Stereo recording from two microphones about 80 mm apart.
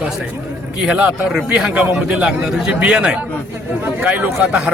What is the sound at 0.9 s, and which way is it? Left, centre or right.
A man's voice, centre.